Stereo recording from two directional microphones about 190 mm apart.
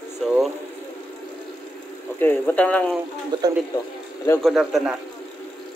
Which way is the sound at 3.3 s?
20° right (ahead or behind).